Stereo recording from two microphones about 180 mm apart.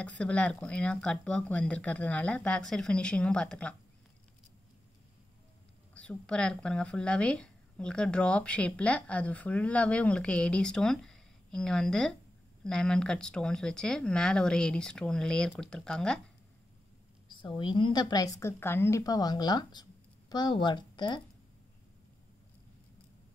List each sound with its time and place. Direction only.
0.2 s speech: 5° left (ahead or behind)
5.9 s speech: 5° left (ahead or behind)
17.3 s a woman's voice: 25° left (ahead or behind)